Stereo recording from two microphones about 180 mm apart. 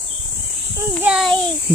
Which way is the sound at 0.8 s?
10° right (ahead or behind).